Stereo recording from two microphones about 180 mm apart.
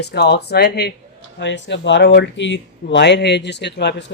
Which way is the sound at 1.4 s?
80° left.